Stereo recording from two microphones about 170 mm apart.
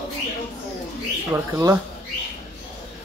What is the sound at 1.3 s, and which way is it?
Speech, 15° right (ahead or behind).